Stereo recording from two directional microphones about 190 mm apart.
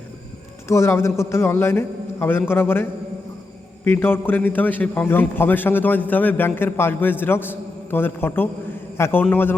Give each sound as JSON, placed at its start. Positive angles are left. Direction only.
{"t": 0.7, "sound": "a man's voice", "side_deg": 15}
{"t": 3.8, "sound": "a man's voice", "side_deg": 10}